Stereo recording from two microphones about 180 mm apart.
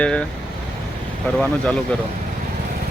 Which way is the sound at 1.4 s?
5° left (ahead or behind).